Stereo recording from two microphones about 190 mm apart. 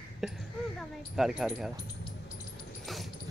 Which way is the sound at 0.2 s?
Centre (ahead or behind).